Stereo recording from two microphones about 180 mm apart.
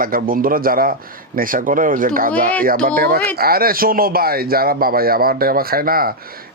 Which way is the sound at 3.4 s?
55° right (ahead or behind).